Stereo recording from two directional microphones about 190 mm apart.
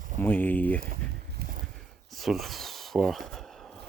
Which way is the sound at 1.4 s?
50° right (ahead or behind).